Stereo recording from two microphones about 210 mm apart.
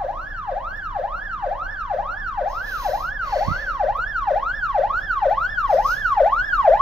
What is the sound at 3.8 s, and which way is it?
Emergency vehicle, centre (ahead or behind).